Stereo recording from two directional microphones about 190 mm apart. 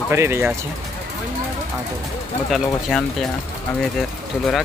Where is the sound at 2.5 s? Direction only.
Centre (ahead or behind).